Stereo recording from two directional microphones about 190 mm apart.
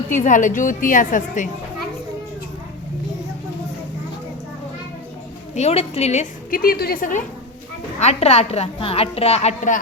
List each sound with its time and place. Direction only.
0.1 s a woman's voice: 40° left (ahead or behind)
5.5 s a woman's voice: 35° left (ahead or behind)
6.6 s a woman's voice: 55° left (ahead or behind)
7.9 s a woman's voice: 35° left (ahead or behind)